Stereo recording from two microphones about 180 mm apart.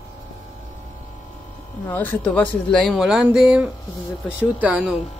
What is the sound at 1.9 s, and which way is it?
Speech, 10° left (ahead or behind).